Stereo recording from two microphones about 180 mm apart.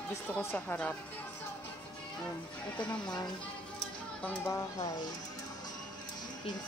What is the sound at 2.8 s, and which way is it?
Speech, 25° left (ahead or behind).